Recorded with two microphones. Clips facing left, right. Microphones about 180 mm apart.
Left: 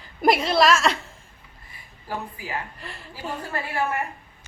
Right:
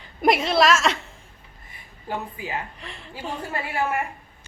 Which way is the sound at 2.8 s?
Centre (ahead or behind).